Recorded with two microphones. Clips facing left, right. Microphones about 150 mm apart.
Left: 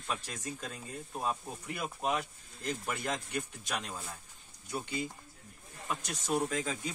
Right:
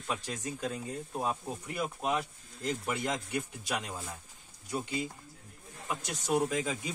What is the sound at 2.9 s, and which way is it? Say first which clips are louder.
Speech: right 2 dB; 15° right (ahead or behind).